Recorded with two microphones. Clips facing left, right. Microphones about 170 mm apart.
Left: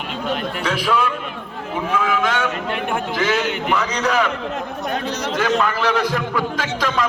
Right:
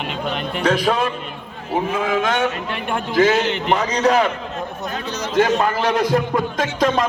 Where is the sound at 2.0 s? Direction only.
45° right (ahead or behind).